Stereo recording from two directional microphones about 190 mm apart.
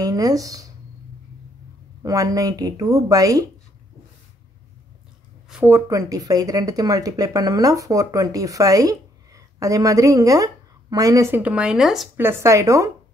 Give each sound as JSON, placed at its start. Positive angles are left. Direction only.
{"t": 0.0, "sound": "speech", "side_deg": -20}
{"t": 2.0, "sound": "speech", "side_deg": -20}
{"t": 5.5, "sound": "a sound", "side_deg": -10}
{"t": 5.8, "sound": "speech", "side_deg": -20}
{"t": 12.2, "sound": "speech", "side_deg": -15}